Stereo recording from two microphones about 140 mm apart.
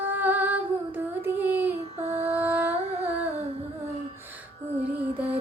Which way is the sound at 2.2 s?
15° right (ahead or behind).